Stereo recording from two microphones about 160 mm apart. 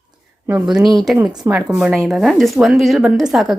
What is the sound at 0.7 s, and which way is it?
Speech, centre (ahead or behind).